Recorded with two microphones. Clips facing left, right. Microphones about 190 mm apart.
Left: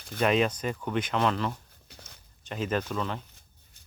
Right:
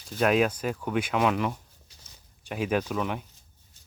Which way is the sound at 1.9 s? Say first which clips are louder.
Left 10 dB; 60° left (ahead or behind).